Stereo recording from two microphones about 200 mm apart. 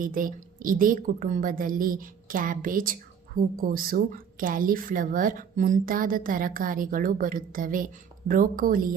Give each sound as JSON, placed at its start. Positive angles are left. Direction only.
{"t": 0.0, "sound": "a woman's voice", "side_deg": -40}